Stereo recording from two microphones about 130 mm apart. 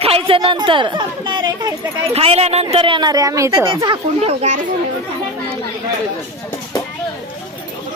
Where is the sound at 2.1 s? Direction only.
50° right (ahead or behind); by 3.5 s 25° right (ahead or behind).